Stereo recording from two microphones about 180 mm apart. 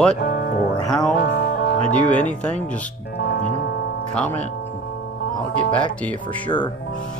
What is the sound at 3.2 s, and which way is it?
Music, 60° left (ahead or behind).